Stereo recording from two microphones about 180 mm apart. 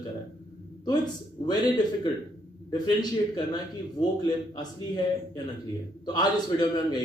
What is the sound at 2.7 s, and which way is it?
Speech, 20° left (ahead or behind).